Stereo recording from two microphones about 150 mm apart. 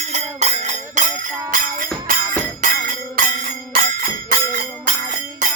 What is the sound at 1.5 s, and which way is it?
Music, 65° right (ahead or behind).